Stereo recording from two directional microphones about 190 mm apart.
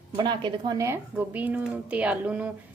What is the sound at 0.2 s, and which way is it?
A woman's voice, 25° right (ahead or behind).